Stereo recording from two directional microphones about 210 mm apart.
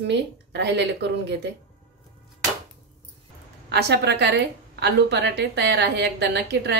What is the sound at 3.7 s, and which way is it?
A woman's voice, 50° right (ahead or behind).